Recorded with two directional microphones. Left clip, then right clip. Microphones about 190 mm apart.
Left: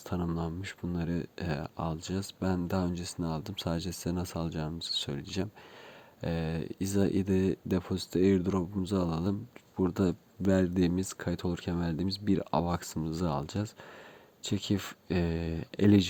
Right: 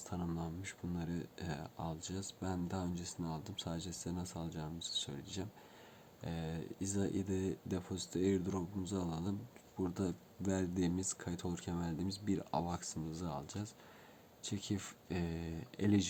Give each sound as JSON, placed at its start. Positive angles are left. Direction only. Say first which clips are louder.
{"t": 0.0, "sound": "speech", "louder": "left 8 dB", "side_deg": 40}